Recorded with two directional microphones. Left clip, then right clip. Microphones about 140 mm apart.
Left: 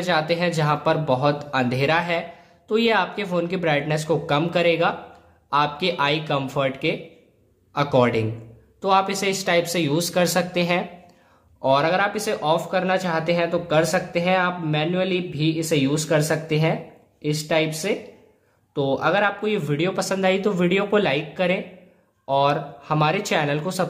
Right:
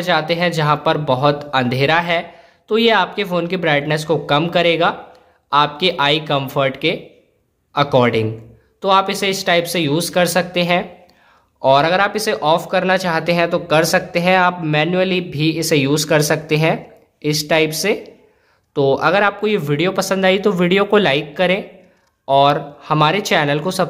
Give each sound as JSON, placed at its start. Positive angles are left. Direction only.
{"t": 0.0, "sound": "speech", "side_deg": -20}
{"t": 11.6, "sound": "speech", "side_deg": -30}